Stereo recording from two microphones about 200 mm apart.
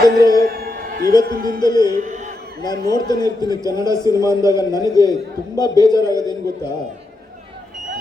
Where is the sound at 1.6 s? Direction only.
20° left (ahead or behind).